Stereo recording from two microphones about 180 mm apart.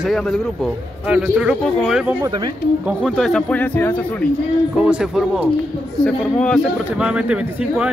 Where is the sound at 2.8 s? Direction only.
5° right (ahead or behind).